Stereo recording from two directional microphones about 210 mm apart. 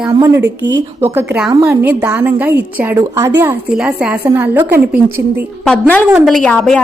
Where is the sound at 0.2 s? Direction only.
15° right (ahead or behind).